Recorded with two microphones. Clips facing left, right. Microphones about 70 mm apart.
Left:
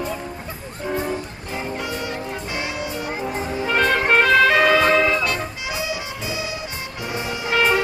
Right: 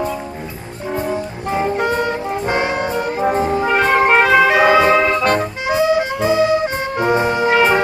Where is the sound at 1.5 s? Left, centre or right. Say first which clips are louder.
Right 10 dB; right.